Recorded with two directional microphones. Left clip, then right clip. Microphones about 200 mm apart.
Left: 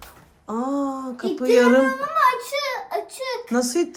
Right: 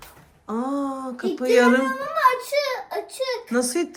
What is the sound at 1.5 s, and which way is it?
Speech, 15° left (ahead or behind).